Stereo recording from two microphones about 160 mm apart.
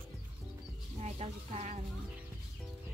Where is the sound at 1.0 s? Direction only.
40° right (ahead or behind).